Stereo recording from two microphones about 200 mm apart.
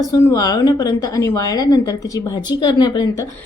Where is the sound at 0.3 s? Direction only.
20° left (ahead or behind).